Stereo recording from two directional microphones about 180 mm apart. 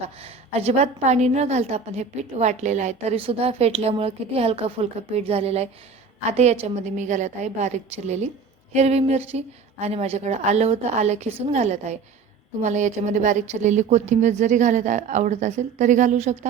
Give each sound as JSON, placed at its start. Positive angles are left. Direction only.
{"t": 0.2, "sound": "a woman's voice", "side_deg": -35}